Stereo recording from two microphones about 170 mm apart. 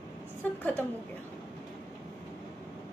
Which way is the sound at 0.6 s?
10° left (ahead or behind).